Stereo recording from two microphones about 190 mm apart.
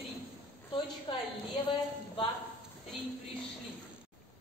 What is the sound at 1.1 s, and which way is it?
Speech, 25° left (ahead or behind).